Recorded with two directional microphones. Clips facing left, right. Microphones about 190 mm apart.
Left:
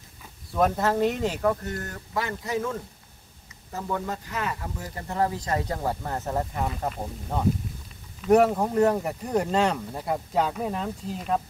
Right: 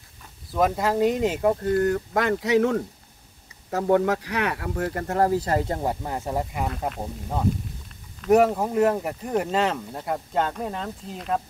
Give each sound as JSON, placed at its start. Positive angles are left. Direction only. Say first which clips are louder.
{"t": 0.5, "sound": "speech", "louder": "right 1 dB", "side_deg": -5}
{"t": 2.1, "sound": "speech", "louder": "right 5 dB", "side_deg": -70}
{"t": 5.0, "sound": "speech", "louder": "right 4 dB", "side_deg": -45}
{"t": 6.0, "sound": "speech", "louder": "right 1 dB", "side_deg": -10}
{"t": 8.5, "sound": "speech", "louder": "even", "side_deg": -5}